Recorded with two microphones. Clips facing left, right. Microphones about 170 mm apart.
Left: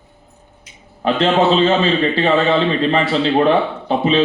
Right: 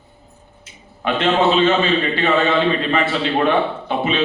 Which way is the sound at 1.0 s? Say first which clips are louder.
Left 2 dB; 35° left (ahead or behind).